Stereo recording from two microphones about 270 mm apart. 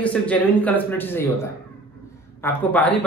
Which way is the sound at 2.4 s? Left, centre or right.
Centre.